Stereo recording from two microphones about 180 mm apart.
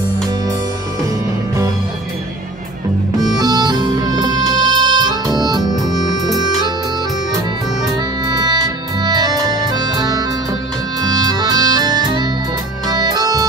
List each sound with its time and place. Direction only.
3.2 s music: 20° right (ahead or behind)
8.3 s music: 25° right (ahead or behind)